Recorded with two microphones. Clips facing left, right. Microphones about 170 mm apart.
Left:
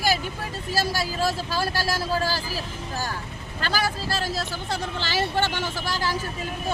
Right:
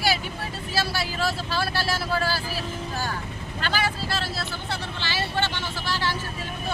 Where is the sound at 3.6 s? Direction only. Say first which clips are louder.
Left 1 dB; 40° left (ahead or behind).